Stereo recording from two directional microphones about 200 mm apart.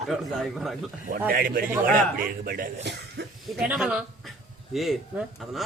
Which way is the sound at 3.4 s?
Centre (ahead or behind).